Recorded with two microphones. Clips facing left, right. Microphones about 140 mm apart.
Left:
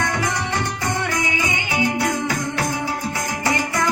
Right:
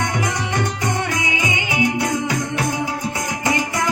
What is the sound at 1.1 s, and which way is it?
Music, 20° right (ahead or behind).